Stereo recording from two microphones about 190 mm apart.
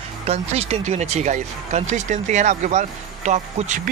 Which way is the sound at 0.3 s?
35° right (ahead or behind).